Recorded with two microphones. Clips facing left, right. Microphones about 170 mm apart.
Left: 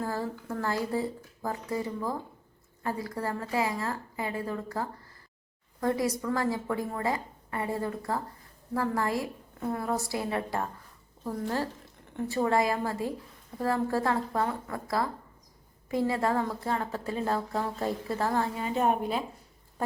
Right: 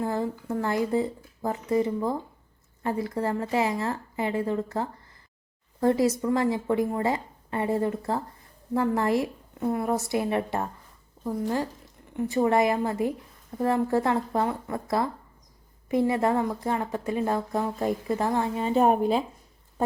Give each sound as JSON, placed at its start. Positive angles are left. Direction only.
{"t": 0.0, "sound": "a woman's voice", "side_deg": -20}